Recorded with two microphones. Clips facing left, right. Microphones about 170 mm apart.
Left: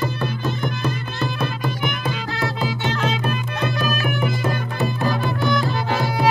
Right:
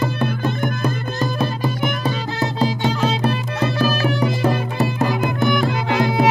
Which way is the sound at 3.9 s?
30° right (ahead or behind).